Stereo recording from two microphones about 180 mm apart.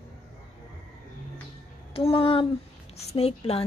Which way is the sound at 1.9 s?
30° left (ahead or behind).